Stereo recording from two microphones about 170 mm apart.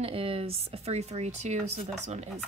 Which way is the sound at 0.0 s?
35° right (ahead or behind).